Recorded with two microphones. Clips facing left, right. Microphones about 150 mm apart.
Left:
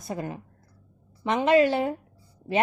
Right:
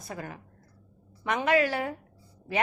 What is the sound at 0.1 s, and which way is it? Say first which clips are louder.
A woman's voice: left 6 dB; 25° left (ahead or behind).